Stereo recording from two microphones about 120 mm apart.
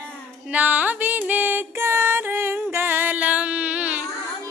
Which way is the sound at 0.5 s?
10° right (ahead or behind).